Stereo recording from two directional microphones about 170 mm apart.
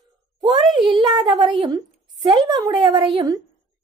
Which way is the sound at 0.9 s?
25° right (ahead or behind).